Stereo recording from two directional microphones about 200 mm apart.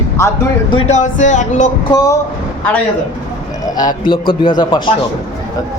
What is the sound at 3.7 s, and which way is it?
A man's voice, 20° left (ahead or behind).